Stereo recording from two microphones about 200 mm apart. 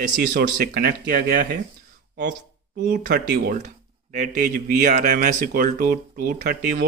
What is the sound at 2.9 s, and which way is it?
Speech, 50° right (ahead or behind).